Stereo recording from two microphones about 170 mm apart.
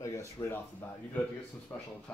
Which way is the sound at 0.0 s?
15° left (ahead or behind).